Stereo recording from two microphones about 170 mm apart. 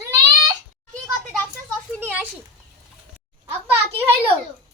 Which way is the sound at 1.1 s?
5° left (ahead or behind).